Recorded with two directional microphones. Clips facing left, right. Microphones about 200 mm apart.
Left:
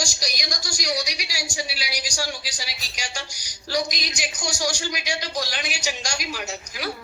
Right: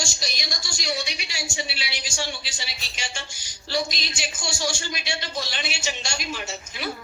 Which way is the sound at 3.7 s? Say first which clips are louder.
Left 1 dB; 15° left (ahead or behind).